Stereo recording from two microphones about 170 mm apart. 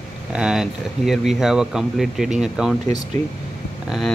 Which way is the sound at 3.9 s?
Centre (ahead or behind).